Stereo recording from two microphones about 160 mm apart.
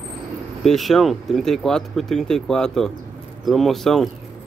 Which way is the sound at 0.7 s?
Centre (ahead or behind).